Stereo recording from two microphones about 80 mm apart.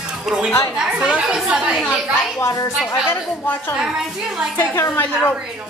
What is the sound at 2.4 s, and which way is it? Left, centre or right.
Speech, left.